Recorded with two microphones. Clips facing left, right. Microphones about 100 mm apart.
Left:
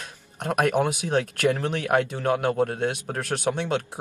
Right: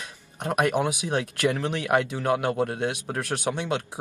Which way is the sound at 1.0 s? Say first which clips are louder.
Left 3 dB; 55° left (ahead or behind).